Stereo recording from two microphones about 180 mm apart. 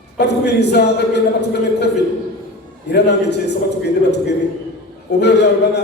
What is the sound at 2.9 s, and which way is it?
Speech, 70° left (ahead or behind).